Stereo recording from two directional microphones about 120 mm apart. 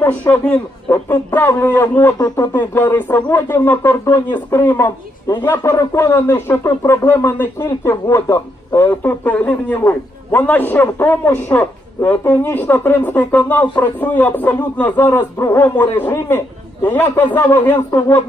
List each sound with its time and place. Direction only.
0.0 s speech: 15° left (ahead or behind)